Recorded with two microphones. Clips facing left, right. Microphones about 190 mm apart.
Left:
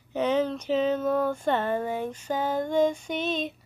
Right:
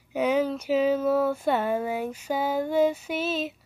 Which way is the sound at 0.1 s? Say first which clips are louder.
Right 1 dB; 10° right (ahead or behind).